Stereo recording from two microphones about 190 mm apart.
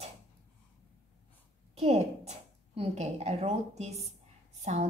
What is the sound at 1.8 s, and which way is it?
A woman's voice, 35° right (ahead or behind).